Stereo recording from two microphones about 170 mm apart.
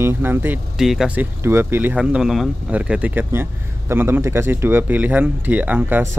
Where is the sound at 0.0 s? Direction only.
15° right (ahead or behind).